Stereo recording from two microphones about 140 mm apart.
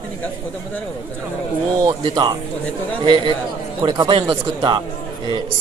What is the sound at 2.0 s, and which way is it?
Speech, 35° right (ahead or behind).